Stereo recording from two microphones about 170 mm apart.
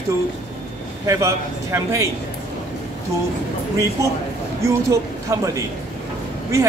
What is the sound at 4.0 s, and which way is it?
A man's voice, 20° right (ahead or behind).